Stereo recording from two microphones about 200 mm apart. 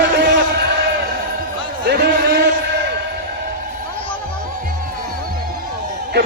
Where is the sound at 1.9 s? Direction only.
50° right (ahead or behind).